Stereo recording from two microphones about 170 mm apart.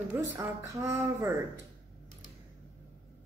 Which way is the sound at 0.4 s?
15° right (ahead or behind).